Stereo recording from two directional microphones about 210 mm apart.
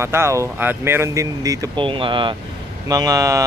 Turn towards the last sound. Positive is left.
turn(degrees=-15)  # may be behind; listen again after turning